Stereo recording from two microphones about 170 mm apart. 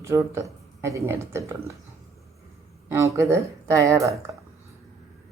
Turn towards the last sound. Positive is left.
turn(degrees=-15)  # may be behind; listen again after turning